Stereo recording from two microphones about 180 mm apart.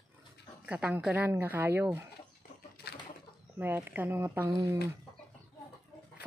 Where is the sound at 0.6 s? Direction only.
5° right (ahead or behind).